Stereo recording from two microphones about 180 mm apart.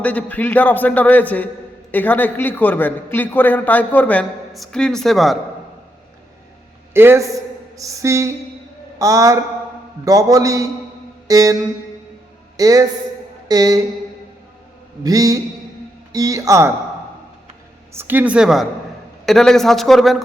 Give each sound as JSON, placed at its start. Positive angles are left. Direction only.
{"t": 0.0, "sound": "a man's voice", "side_deg": 10}
{"t": 6.9, "sound": "a man's voice", "side_deg": -15}
{"t": 12.5, "sound": "a man's voice", "side_deg": -20}
{"t": 15.0, "sound": "a man's voice", "side_deg": -20}
{"t": 17.9, "sound": "a man's voice", "side_deg": -10}